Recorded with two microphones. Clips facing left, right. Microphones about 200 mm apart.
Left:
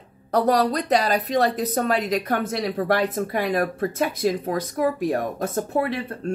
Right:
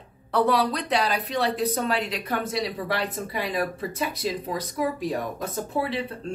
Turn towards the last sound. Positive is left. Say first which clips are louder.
# left 3 dB
turn(degrees=50)  # may be behind; listen again after turning